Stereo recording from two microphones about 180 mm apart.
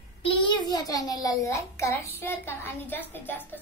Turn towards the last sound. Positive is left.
turn(degrees=10)  # may be behind; listen again after turning